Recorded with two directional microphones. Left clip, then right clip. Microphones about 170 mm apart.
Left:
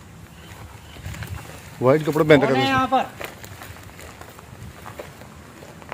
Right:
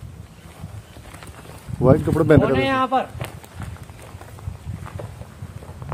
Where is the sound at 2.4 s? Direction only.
35° right (ahead or behind).